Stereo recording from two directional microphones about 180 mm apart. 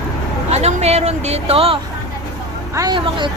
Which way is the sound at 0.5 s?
35° right (ahead or behind).